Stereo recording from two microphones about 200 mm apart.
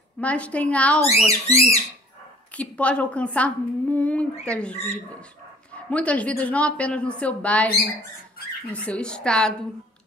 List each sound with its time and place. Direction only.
0.2 s a woman's voice: 5° left (ahead or behind)
1.0 s speech: 30° left (ahead or behind)
2.5 s a woman's voice: 5° left (ahead or behind)
5.9 s a woman's voice: 5° left (ahead or behind)
8.8 s speech: 5° left (ahead or behind)